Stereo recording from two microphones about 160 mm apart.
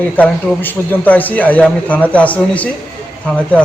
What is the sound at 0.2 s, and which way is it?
A man's voice, 10° left (ahead or behind).